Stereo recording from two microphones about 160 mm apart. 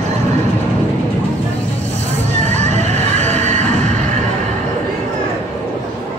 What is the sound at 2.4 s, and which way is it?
Music, 45° right (ahead or behind).